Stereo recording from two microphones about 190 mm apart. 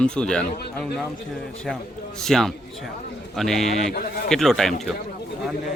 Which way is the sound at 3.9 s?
50° left (ahead or behind).